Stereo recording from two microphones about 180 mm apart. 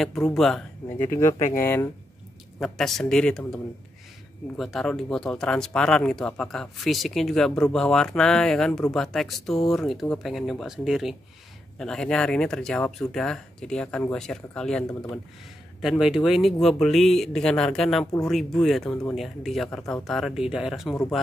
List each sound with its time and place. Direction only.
0.0 s speech: centre (ahead or behind)
1.0 s speech: 15° left (ahead or behind)
2.6 s speech: centre (ahead or behind)
4.6 s speech: centre (ahead or behind)